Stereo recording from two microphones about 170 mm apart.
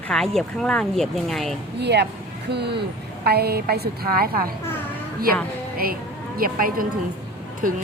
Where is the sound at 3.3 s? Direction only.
65° right (ahead or behind).